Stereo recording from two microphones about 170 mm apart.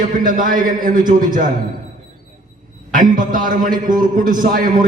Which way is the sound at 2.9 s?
50° right (ahead or behind).